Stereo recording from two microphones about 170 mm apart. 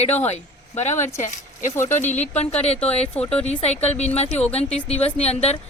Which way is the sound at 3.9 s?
40° left (ahead or behind).